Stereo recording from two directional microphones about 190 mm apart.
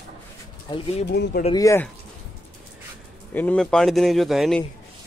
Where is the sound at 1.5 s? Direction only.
15° left (ahead or behind).